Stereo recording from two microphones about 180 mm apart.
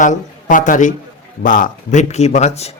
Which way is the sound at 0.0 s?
45° left (ahead or behind).